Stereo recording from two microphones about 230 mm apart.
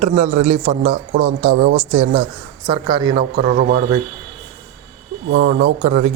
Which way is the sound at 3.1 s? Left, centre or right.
Right.